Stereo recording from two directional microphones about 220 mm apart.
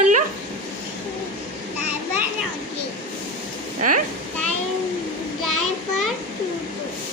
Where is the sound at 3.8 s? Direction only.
35° right (ahead or behind).